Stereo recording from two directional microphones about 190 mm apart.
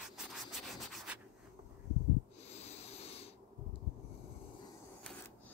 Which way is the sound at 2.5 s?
35° left (ahead or behind).